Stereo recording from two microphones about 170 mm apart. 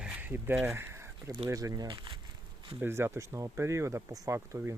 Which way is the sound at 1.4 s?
20° right (ahead or behind).